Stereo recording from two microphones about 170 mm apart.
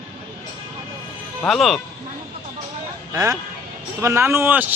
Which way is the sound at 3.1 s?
20° right (ahead or behind).